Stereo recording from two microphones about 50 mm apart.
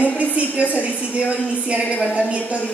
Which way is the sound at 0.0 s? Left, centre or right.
Left.